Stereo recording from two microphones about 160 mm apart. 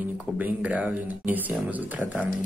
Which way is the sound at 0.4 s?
10° right (ahead or behind).